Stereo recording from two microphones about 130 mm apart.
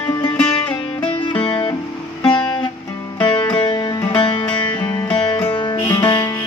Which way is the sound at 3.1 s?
40° left (ahead or behind).